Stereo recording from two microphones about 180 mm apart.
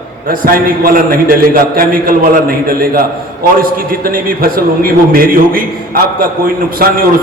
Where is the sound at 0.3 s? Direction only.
55° right (ahead or behind).